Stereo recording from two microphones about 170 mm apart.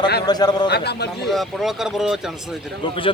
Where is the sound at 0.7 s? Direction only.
75° left (ahead or behind).